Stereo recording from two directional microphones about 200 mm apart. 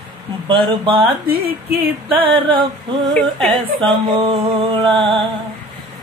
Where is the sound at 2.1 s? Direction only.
25° right (ahead or behind).